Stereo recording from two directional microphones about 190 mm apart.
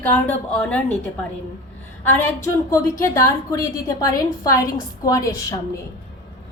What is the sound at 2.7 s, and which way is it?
A woman's voice, 15° left (ahead or behind).